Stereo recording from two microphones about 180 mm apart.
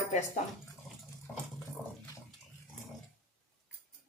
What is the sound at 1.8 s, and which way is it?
Water, centre (ahead or behind).